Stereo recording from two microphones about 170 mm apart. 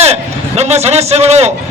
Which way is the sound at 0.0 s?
40° right (ahead or behind).